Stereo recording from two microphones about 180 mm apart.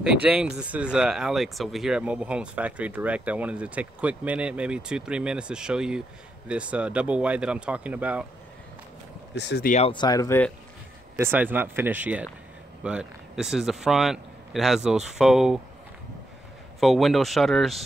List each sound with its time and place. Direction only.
0.0 s speech: 5° right (ahead or behind)
9.3 s speech: 70° left (ahead or behind)
9.7 s speech: 35° left (ahead or behind)
9.9 s speech: 20° left (ahead or behind)
11.1 s speech: 10° right (ahead or behind)
16.8 s speech: centre (ahead or behind)